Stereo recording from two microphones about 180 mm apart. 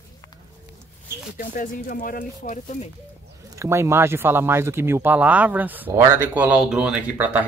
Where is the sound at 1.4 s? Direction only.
50° left (ahead or behind).